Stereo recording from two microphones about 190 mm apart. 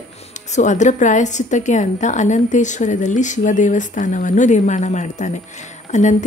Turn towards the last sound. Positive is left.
turn(degrees=40)  # may be behind; listen again after turning